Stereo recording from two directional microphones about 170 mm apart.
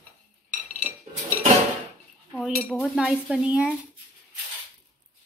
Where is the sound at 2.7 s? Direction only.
5° right (ahead or behind).